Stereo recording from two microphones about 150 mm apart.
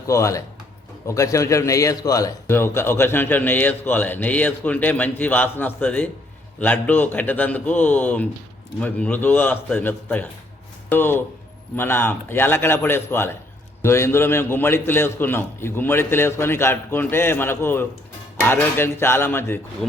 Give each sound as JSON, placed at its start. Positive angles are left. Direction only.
{"t": 0.1, "sound": "a man's voice", "side_deg": 20}
{"t": 19.8, "sound": "speech", "side_deg": 5}